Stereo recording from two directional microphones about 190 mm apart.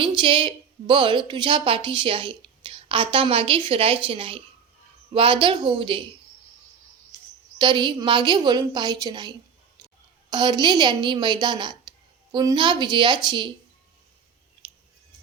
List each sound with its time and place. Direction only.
0.0 s a woman's voice: 25° right (ahead or behind)
7.6 s a woman's voice: 25° right (ahead or behind)